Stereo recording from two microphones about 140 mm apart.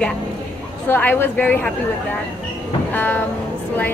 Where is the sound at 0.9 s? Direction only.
15° left (ahead or behind).